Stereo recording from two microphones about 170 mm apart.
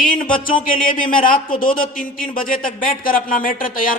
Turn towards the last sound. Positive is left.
turn(degrees=55)  # may be behind; listen again after turning